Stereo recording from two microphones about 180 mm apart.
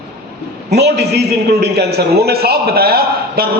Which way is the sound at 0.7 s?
65° right (ahead or behind).